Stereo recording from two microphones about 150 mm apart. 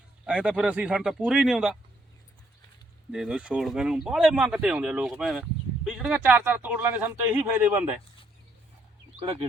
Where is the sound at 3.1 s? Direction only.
5° right (ahead or behind).